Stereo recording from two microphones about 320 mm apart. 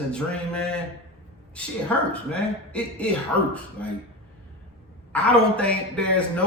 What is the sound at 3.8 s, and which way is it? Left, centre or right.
Speech, centre.